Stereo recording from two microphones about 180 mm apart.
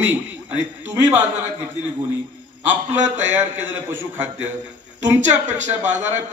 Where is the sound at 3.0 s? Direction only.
40° right (ahead or behind).